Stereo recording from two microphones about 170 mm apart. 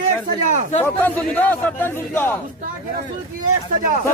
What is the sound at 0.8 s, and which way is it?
A man's voice, 10° left (ahead or behind).